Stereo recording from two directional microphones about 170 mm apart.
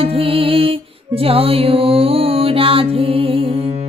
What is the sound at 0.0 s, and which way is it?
Music, 35° right (ahead or behind).